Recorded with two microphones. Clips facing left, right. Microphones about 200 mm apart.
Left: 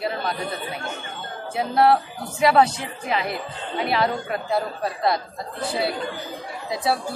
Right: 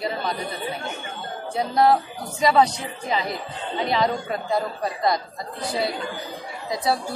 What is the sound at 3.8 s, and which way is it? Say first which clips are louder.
A woman's voice: even; 5° left (ahead or behind).